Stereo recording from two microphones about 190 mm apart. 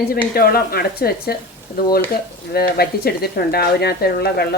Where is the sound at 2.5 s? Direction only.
55° left (ahead or behind).